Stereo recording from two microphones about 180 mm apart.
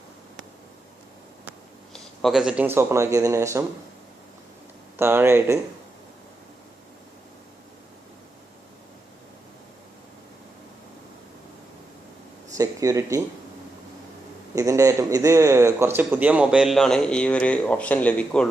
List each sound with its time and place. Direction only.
1.9 s speech: centre (ahead or behind); by 3.6 s 15° right (ahead or behind)
4.9 s speech: 10° right (ahead or behind)
12.5 s speech: 20° right (ahead or behind)
14.5 s a man's voice: 15° right (ahead or behind); by 18.4 s 5° left (ahead or behind)